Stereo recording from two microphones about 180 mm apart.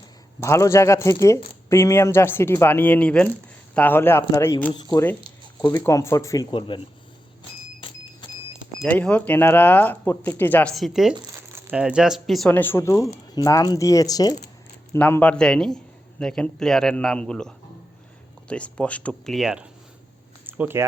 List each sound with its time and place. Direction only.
0.3 s speech: 15° left (ahead or behind)
7.8 s a sound: 25° left (ahead or behind)
8.8 s speech: 5° left (ahead or behind)
14.9 s a man's voice: 10° left (ahead or behind); by 20.8 s 10° right (ahead or behind)